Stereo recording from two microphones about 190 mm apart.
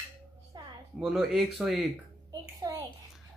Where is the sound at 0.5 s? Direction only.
25° right (ahead or behind).